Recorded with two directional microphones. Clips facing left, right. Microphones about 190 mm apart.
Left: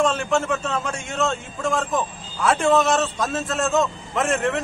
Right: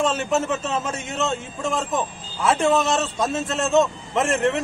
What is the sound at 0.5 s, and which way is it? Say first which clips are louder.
Speech: even; 25° right (ahead or behind).